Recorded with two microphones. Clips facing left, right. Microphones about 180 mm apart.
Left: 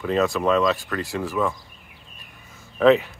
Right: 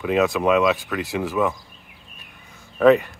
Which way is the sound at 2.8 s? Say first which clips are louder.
Right 1 dB; centre (ahead or behind).